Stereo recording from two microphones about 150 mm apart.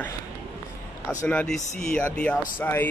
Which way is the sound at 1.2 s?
5° left (ahead or behind).